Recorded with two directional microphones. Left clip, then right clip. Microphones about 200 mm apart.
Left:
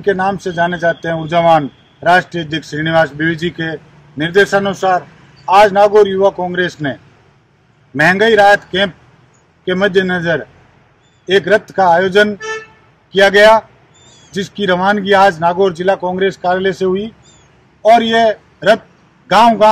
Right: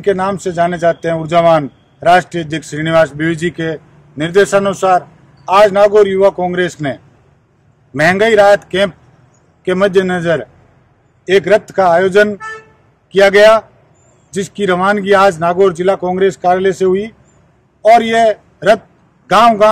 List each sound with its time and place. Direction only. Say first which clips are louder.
0.0 s a man's voice: even; 25° right (ahead or behind)